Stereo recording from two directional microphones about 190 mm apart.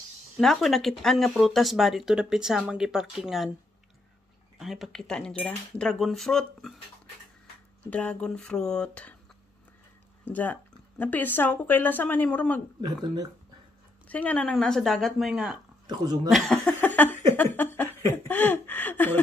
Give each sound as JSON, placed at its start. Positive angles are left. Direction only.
{"t": 0.4, "sound": "speech", "side_deg": 0}
{"t": 4.6, "sound": "speech", "side_deg": 0}
{"t": 7.9, "sound": "speech", "side_deg": 5}
{"t": 10.2, "sound": "laughter", "side_deg": 10}
{"t": 12.8, "sound": "speech", "side_deg": -20}
{"t": 14.0, "sound": "speech", "side_deg": 5}
{"t": 16.3, "sound": "laughter", "side_deg": 0}